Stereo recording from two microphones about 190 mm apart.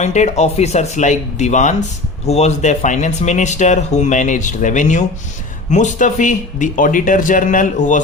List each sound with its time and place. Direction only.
0.0 s speech: 35° left (ahead or behind)